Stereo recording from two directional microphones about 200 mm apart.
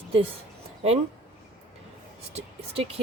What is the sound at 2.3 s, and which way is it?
Speech, 30° right (ahead or behind).